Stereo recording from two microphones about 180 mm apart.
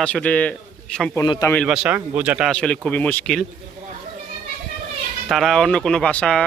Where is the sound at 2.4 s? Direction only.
5° left (ahead or behind).